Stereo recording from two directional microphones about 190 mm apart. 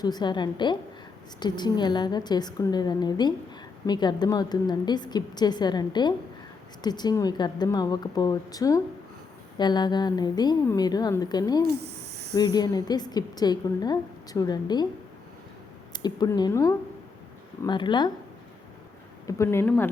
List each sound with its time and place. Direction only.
0.0 s a woman's voice: 20° left (ahead or behind)
15.9 s a woman's voice: 20° left (ahead or behind)
19.4 s speech: 15° left (ahead or behind)